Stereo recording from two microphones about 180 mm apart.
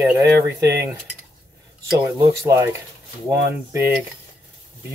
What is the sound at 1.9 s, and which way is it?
Speech, 15° right (ahead or behind).